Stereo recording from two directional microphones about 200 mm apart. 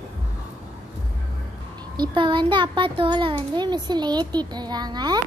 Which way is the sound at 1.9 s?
20° right (ahead or behind).